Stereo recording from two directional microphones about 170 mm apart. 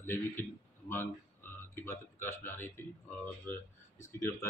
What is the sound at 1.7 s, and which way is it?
Speech, 15° left (ahead or behind).